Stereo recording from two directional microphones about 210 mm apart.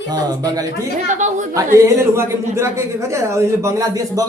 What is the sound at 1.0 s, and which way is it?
Speech, 35° right (ahead or behind).